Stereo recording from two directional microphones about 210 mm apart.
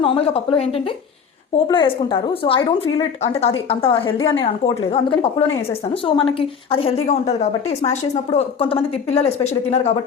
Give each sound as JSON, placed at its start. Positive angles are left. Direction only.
{"t": 0.0, "sound": "a woman's voice", "side_deg": 25}